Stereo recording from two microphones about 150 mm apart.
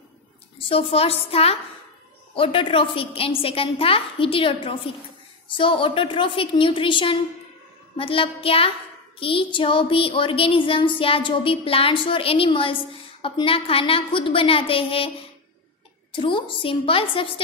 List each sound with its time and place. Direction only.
0.7 s speech: 40° left (ahead or behind)